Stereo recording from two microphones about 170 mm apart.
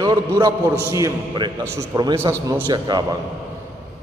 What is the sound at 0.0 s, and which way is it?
A man's voice, 20° right (ahead or behind).